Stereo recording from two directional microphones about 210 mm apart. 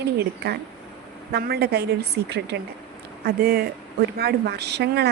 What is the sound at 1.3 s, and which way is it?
Speech, 50° right (ahead or behind).